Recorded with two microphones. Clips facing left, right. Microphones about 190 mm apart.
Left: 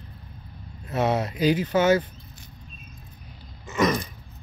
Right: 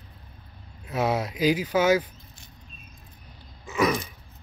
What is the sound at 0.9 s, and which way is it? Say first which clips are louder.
Speech: left 2 dB; 10° right (ahead or behind).